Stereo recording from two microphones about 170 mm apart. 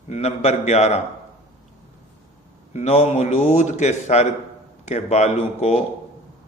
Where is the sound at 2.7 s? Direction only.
40° left (ahead or behind).